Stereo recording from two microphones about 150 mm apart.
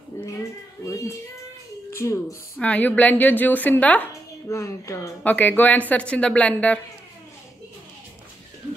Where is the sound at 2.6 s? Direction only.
10° left (ahead or behind).